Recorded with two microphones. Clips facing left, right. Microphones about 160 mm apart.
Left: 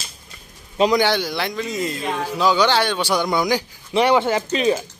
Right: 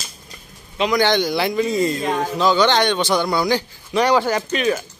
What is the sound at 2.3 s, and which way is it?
A man's voice, 10° left (ahead or behind).